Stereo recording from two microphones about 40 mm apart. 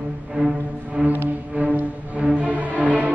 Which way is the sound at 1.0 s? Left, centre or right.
Right.